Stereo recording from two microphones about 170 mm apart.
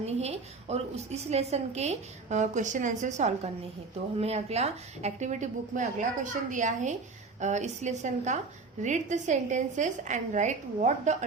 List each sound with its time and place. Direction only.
0.0 s a woman's voice: 40° right (ahead or behind)